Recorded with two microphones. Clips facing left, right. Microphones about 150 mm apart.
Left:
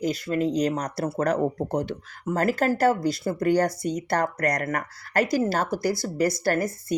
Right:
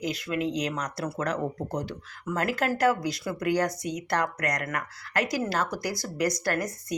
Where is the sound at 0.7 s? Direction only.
30° left (ahead or behind).